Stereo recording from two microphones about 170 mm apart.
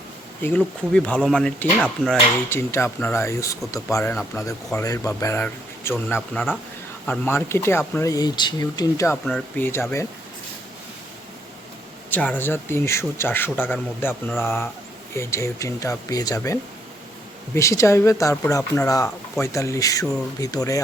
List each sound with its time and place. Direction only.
0.4 s speech: 10° left (ahead or behind)
9.2 s speech: 5° left (ahead or behind)
12.1 s speech: 10° left (ahead or behind)